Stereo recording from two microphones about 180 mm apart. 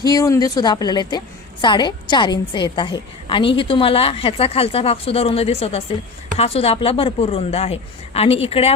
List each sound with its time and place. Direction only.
0.0 s a woman's voice: 20° left (ahead or behind)